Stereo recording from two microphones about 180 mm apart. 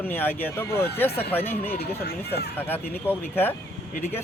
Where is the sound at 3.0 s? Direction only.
10° left (ahead or behind).